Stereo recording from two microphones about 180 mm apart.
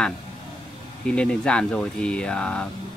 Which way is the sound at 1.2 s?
5° left (ahead or behind).